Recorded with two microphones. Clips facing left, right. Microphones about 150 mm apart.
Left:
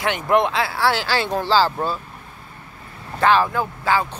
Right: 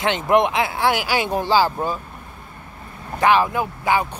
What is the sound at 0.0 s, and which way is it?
Speech, 20° right (ahead or behind).